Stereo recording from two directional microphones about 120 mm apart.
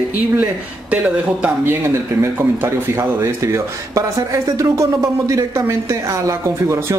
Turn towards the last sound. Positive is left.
turn(degrees=-25)  # may be behind; listen again after turning